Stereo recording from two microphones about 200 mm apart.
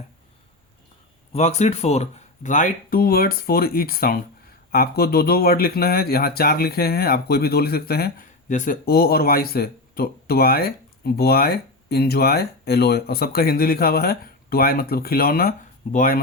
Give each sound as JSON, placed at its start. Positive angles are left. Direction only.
{"t": 1.3, "sound": "speech", "side_deg": 30}